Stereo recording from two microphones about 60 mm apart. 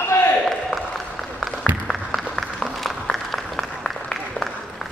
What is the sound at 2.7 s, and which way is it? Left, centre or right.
Applause, centre.